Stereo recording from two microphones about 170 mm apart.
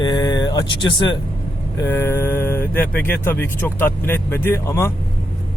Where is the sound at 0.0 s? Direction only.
25° left (ahead or behind).